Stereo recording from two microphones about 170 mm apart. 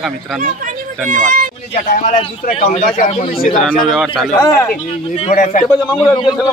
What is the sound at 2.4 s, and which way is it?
Speech, 45° left (ahead or behind).